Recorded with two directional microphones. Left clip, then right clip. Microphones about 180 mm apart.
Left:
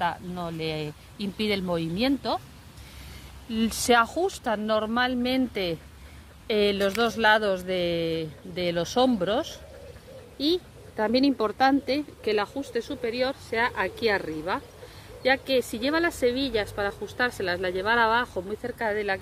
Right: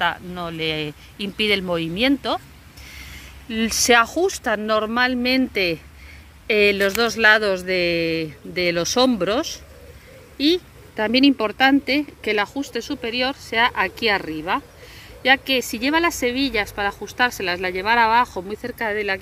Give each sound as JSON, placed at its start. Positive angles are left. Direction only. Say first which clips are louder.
{"t": 0.0, "sound": "speech", "louder": "right 6 dB", "side_deg": -10}
{"t": 3.4, "sound": "speech", "louder": "right 6 dB", "side_deg": -15}